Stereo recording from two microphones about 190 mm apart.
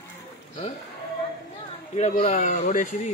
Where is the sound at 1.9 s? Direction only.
35° left (ahead or behind).